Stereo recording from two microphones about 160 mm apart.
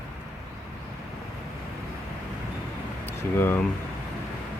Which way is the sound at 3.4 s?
15° left (ahead or behind).